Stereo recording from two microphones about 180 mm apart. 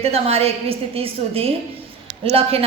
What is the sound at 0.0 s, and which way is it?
A woman's voice, 35° right (ahead or behind).